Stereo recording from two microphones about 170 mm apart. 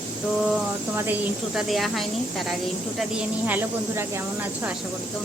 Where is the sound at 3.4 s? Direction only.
10° right (ahead or behind).